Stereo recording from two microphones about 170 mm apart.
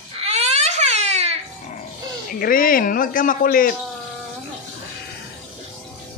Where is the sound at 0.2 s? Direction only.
40° right (ahead or behind).